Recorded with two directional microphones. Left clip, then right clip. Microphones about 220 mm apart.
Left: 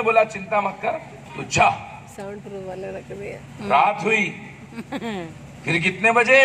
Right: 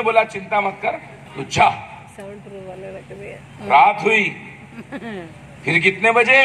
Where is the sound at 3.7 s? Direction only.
15° right (ahead or behind).